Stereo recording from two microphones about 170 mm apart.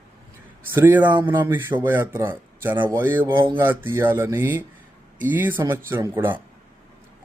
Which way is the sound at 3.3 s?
30° right (ahead or behind).